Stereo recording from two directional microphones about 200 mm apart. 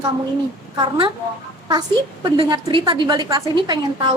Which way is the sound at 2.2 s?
25° right (ahead or behind).